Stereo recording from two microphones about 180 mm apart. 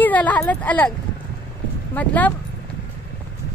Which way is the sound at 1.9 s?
10° left (ahead or behind).